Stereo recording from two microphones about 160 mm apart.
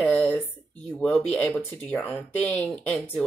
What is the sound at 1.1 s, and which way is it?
Speech, 10° left (ahead or behind).